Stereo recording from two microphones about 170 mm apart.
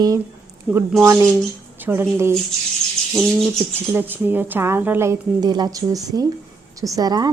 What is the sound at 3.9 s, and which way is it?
A woman's voice, 10° right (ahead or behind).